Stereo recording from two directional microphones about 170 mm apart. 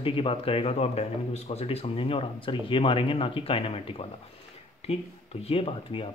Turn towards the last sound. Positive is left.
turn(degrees=35)  # may be behind; listen again after turning